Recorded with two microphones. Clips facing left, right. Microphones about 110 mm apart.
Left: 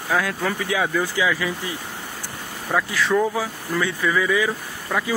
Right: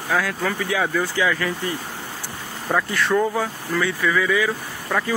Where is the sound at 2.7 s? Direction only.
Centre (ahead or behind).